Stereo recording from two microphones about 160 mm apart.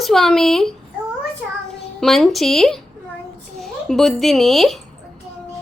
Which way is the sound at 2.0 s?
Centre (ahead or behind).